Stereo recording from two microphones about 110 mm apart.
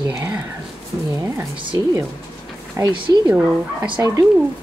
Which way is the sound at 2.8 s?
45° right (ahead or behind).